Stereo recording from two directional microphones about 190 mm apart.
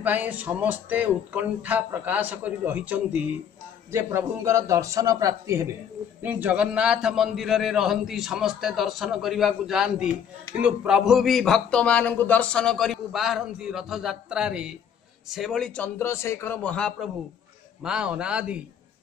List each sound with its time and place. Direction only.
0.0 s a man's voice: 10° right (ahead or behind)